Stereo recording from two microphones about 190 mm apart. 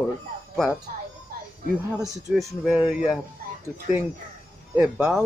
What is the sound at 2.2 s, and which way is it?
Speech, centre (ahead or behind).